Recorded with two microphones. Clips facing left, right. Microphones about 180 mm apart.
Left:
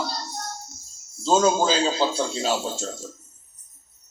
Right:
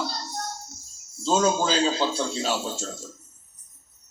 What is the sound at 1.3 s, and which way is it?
A man's voice, 35° left (ahead or behind).